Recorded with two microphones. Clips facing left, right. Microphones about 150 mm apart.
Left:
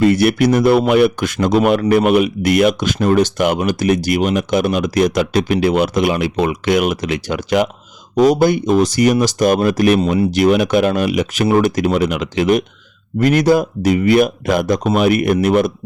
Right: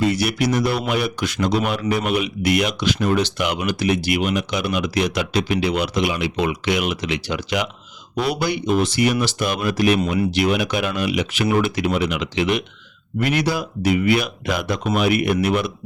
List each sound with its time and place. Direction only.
0.0 s speech: 55° left (ahead or behind)
10.0 s speech: 30° left (ahead or behind)
10.3 s speech: 45° left (ahead or behind)